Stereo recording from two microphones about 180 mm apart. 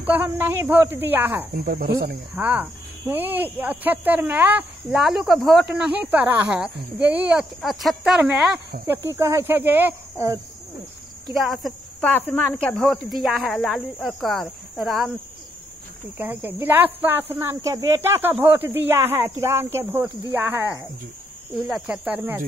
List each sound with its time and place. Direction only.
0.0 s speech: 10° right (ahead or behind)
1.5 s speech: 55° right (ahead or behind)
2.3 s speech: 10° right (ahead or behind)
11.3 s speech: centre (ahead or behind)
16.2 s speech: 10° right (ahead or behind)
21.6 s speech: 5° right (ahead or behind)